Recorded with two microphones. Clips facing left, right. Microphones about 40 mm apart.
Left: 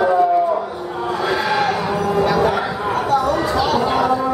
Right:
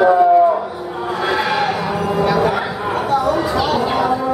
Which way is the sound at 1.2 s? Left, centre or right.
Centre.